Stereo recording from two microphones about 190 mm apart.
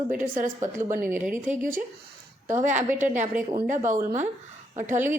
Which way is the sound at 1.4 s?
45° right (ahead or behind).